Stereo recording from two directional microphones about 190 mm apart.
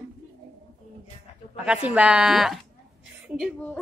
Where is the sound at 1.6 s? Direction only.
5° right (ahead or behind).